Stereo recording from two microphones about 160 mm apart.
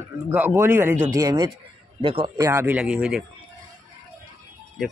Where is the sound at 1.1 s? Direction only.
25° right (ahead or behind).